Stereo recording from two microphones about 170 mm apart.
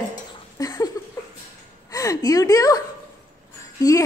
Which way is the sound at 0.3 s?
20° left (ahead or behind).